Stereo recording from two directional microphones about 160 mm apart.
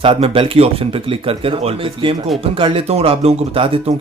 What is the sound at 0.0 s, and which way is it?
Speech, 35° right (ahead or behind).